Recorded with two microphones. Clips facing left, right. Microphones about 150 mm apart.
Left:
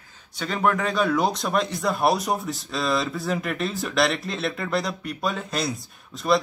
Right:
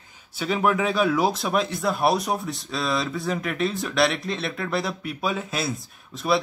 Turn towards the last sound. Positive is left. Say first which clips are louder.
# left 1 dB
turn(degrees=0)  # may be behind; listen again after turning